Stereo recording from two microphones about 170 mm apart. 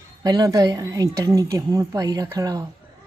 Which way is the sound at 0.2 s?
20° right (ahead or behind).